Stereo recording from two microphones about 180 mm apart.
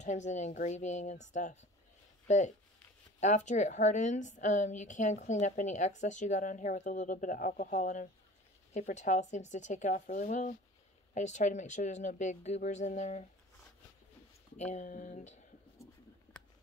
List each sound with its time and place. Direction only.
0.0 s a woman's voice: 40° left (ahead or behind)
14.6 s speech: 40° left (ahead or behind)